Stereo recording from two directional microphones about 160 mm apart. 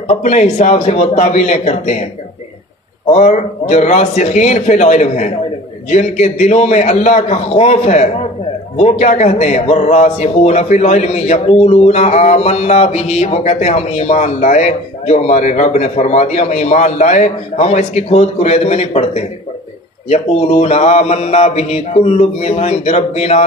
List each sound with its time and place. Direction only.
0.1 s a man's voice: 50° left (ahead or behind)
3.1 s a man's voice: 45° left (ahead or behind)